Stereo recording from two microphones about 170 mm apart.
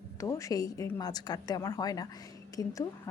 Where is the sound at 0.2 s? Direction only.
20° left (ahead or behind).